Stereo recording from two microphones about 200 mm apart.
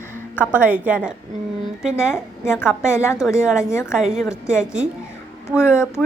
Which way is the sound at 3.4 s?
5° right (ahead or behind).